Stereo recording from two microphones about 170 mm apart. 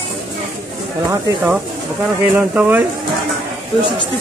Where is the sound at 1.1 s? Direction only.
10° right (ahead or behind).